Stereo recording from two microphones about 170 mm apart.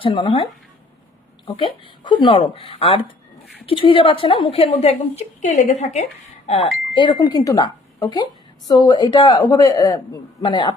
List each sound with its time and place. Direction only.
0.0 s a woman's voice: 30° left (ahead or behind)
1.5 s a woman's voice: 30° left (ahead or behind)